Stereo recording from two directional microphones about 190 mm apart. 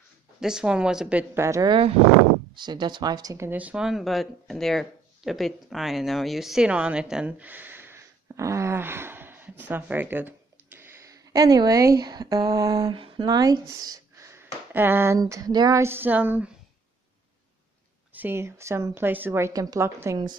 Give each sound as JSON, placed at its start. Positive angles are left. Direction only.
{"t": 0.4, "sound": "a woman's voice", "side_deg": -5}
{"t": 18.1, "sound": "a woman's voice", "side_deg": -10}